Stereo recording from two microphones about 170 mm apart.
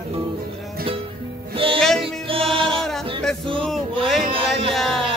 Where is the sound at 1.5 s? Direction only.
30° right (ahead or behind).